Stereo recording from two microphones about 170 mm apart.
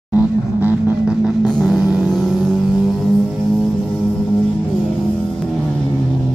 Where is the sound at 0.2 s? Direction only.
10° right (ahead or behind).